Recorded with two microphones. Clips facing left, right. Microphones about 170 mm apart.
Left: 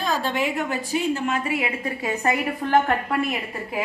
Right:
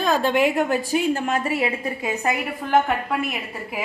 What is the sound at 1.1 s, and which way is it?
Speech, 40° right (ahead or behind).